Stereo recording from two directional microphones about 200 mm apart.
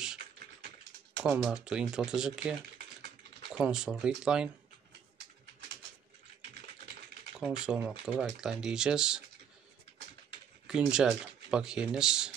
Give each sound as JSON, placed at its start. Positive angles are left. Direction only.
{"t": 1.2, "sound": "speech", "side_deg": -5}
{"t": 3.5, "sound": "speech", "side_deg": -5}
{"t": 7.3, "sound": "speech", "side_deg": -5}
{"t": 10.7, "sound": "speech", "side_deg": -5}